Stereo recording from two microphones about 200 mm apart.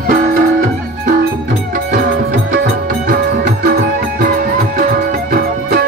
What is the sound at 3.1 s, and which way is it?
Music, 45° right (ahead or behind).